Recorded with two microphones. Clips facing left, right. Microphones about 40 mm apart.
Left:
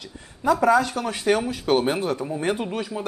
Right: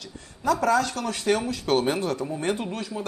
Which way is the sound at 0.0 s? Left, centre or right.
Centre.